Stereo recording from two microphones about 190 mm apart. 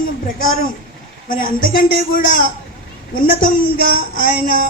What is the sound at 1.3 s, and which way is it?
Speech, 45° left (ahead or behind).